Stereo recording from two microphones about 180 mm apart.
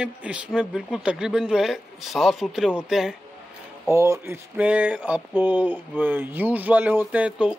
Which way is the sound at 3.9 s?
15° right (ahead or behind).